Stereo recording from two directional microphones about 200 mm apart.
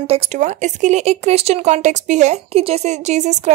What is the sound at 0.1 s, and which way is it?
Speech, 35° right (ahead or behind).